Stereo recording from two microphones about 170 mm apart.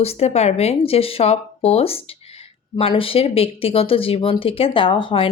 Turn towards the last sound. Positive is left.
turn(degrees=30)  # may be behind; listen again after turning